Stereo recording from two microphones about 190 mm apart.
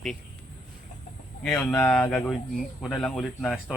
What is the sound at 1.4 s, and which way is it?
A man's voice, 10° left (ahead or behind).